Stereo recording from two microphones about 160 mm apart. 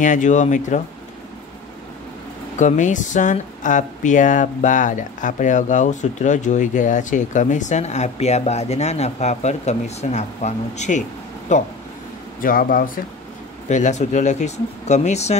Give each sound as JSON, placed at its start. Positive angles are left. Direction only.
{"t": 0.0, "sound": "speech", "side_deg": 50}
{"t": 2.6, "sound": "speech", "side_deg": 50}
{"t": 12.4, "sound": "speech", "side_deg": 60}
{"t": 13.7, "sound": "speech", "side_deg": 50}